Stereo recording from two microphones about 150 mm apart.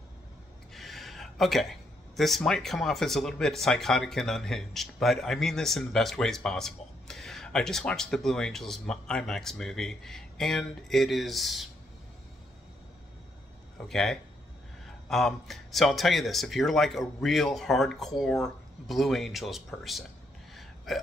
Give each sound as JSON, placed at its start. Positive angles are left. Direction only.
{"t": 0.7, "sound": "speech", "side_deg": 0}
{"t": 13.7, "sound": "speech", "side_deg": 0}
{"t": 20.5, "sound": "hiccup", "side_deg": 0}